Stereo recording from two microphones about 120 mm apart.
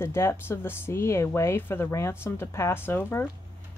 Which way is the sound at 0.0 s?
20° left (ahead or behind).